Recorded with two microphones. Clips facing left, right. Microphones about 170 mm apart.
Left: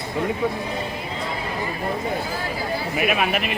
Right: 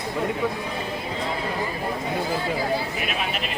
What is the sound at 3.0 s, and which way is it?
Speech, 65° left (ahead or behind).